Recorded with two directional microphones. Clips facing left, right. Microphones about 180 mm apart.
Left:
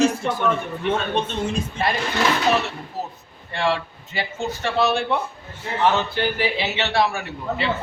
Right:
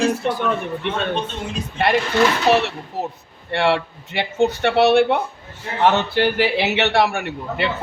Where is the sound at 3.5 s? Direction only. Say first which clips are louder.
Right 4 dB; 70° right (ahead or behind).